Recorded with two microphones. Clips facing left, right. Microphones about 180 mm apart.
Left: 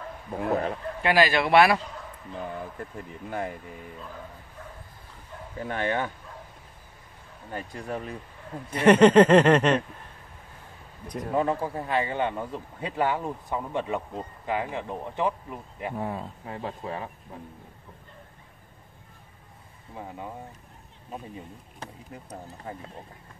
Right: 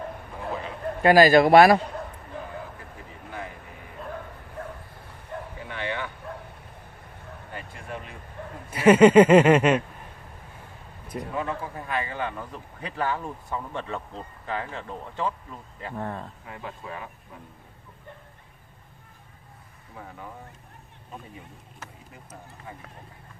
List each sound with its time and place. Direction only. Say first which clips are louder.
0.4 s a sound: left 7 dB; 55° left (ahead or behind)
1.0 s speech: right 7 dB; 40° right (ahead or behind)
1.8 s a sound: right 6 dB; 60° right (ahead or behind)
4.0 s bow-wow: right 5 dB; 60° right (ahead or behind)
5.7 s speech: left 5 dB; 45° left (ahead or behind)
7.5 s speech: left 5 dB; 40° left (ahead or behind)
8.6 s speech: right 1 dB; 5° right (ahead or behind)
11.1 s a man's voice: even; centre (ahead or behind)
11.6 s speech: left 4 dB; 30° left (ahead or behind); by 16.3 s 10° left (ahead or behind)
16.4 s speech: left 4 dB; 30° left (ahead or behind)
20.0 s speech: left 3 dB; 25° left (ahead or behind)
22.7 s speech: left 5 dB; 45° left (ahead or behind)